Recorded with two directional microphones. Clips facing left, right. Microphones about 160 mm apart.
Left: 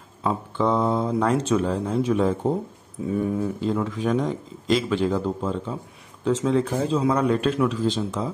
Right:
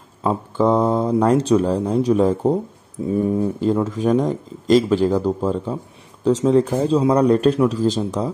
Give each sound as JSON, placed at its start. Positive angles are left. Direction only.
{"t": 0.2, "sound": "speech", "side_deg": -40}